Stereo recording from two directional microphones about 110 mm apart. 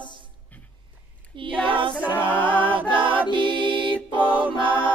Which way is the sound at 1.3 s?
50° right (ahead or behind).